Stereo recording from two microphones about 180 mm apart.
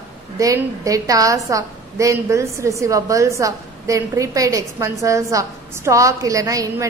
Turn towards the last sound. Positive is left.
turn(degrees=-20)  # may be behind; listen again after turning